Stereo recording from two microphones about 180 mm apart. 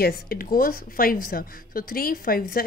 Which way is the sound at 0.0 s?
55° left (ahead or behind).